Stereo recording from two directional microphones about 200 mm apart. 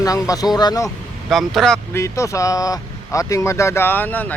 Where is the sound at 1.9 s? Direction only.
15° left (ahead or behind).